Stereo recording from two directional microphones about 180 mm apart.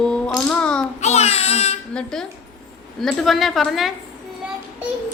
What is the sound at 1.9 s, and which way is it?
A woman's voice, 5° left (ahead or behind).